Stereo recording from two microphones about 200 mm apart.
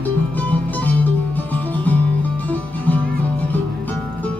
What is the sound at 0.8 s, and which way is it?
Music, 10° left (ahead or behind).